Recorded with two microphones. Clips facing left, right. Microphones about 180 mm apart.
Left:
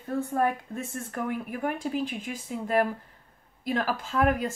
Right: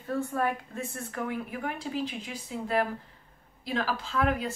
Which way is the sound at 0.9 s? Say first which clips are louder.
Left 3 dB; 50° left (ahead or behind).